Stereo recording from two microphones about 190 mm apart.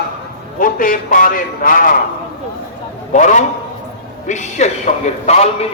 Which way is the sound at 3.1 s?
40° left (ahead or behind).